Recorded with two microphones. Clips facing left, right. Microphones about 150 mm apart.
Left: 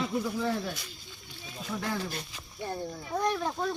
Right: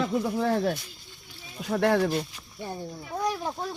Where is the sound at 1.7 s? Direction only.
75° right (ahead or behind).